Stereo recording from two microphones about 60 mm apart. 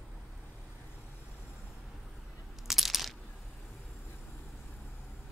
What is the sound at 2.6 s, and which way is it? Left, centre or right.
Coin, centre.